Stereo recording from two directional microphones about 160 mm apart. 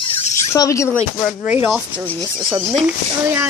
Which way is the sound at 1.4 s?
10° right (ahead or behind).